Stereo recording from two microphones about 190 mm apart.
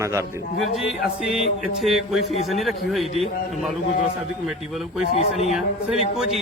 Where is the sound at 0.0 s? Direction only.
15° right (ahead or behind).